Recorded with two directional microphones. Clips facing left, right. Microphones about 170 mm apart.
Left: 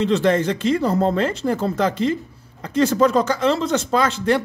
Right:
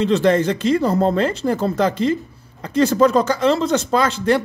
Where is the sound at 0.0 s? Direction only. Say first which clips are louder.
Right 2 dB; 35° right (ahead or behind).